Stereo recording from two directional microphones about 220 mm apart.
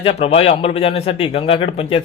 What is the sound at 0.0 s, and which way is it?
A man's voice, 25° left (ahead or behind).